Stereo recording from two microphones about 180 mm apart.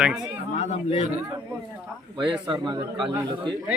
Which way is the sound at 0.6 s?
40° left (ahead or behind).